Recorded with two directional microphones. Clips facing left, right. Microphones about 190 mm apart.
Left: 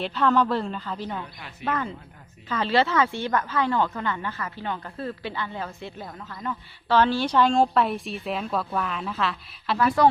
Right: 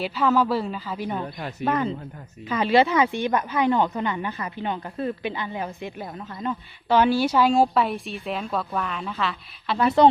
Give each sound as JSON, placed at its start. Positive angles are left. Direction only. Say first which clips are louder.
{"t": 0.0, "sound": "speech", "louder": "right 1 dB", "side_deg": -5}
{"t": 1.2, "sound": "speech", "louder": "right 8 dB", "side_deg": -40}
{"t": 1.6, "sound": "speech", "louder": "right 4 dB", "side_deg": -15}
{"t": 9.7, "sound": "speech", "louder": "right 3 dB", "side_deg": -25}